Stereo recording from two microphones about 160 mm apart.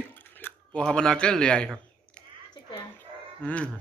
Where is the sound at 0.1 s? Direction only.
10° left (ahead or behind).